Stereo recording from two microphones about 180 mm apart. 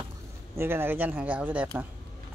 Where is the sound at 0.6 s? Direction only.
15° right (ahead or behind).